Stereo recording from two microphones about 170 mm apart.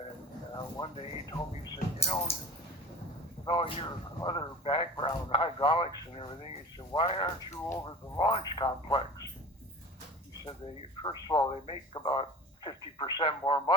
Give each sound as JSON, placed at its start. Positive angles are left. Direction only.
{"t": 0.5, "sound": "speech", "side_deg": 25}
{"t": 3.4, "sound": "a man's voice", "side_deg": 30}
{"t": 11.0, "sound": "speech", "side_deg": 25}